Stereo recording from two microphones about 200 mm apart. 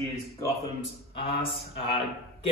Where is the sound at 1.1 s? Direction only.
25° left (ahead or behind).